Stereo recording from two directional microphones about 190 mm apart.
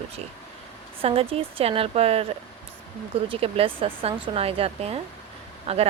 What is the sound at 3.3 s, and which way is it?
A woman's voice, 30° right (ahead or behind).